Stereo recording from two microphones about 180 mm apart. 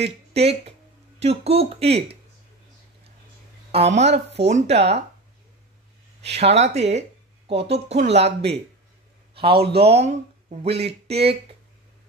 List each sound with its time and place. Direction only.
0.3 s speech: 35° right (ahead or behind)
3.7 s speech: 35° right (ahead or behind)
6.4 s a man's voice: 40° right (ahead or behind)